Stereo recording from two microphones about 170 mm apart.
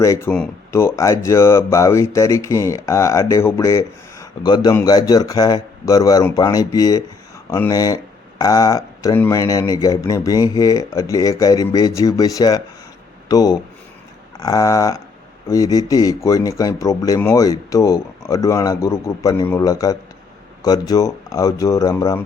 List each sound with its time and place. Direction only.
0.0 s speech: 15° left (ahead or behind)